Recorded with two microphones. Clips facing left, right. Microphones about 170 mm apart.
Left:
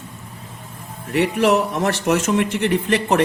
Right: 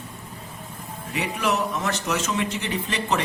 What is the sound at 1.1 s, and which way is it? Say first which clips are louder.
Music: left 9 dB; 75° left (ahead or behind).